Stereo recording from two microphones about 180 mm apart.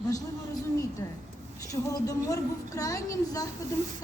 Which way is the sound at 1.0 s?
25° left (ahead or behind).